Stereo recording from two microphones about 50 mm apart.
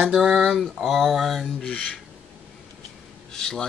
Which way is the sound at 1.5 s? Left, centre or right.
Centre.